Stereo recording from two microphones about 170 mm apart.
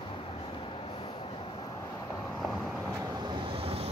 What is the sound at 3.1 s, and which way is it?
Vehicle, 25° right (ahead or behind).